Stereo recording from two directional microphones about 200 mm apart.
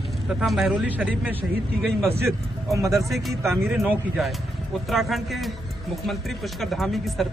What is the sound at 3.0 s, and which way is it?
Speech, centre (ahead or behind).